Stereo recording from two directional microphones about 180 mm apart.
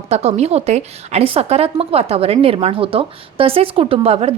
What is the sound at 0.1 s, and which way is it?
A woman's voice, 35° right (ahead or behind).